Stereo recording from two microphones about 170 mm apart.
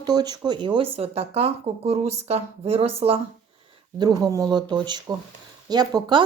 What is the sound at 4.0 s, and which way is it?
Speech, 25° right (ahead or behind).